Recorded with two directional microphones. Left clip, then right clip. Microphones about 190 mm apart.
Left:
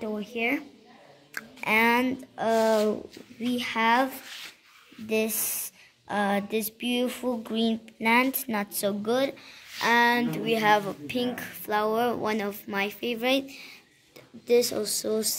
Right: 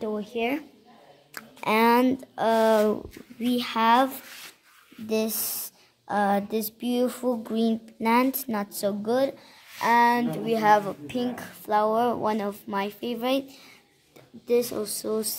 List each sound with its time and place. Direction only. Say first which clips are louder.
0.0 s a woman's voice: right 1 dB; 35° right (ahead or behind)
2.3 s speech: right 2 dB; 55° right (ahead or behind); by 4.5 s 40° right (ahead or behind)
5.0 s speech: even; 25° right (ahead or behind)